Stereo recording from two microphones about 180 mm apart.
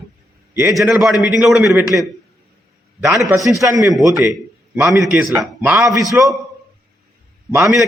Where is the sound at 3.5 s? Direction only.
20° right (ahead or behind).